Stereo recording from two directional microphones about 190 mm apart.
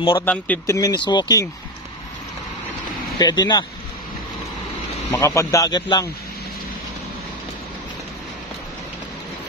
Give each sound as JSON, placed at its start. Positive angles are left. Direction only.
{"t": 0.2, "sound": "speech", "side_deg": 10}
{"t": 0.7, "sound": "speech", "side_deg": 20}
{"t": 3.2, "sound": "speech", "side_deg": 20}
{"t": 5.1, "sound": "speech", "side_deg": 15}